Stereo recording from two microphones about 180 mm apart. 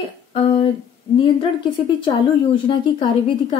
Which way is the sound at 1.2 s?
30° left (ahead or behind).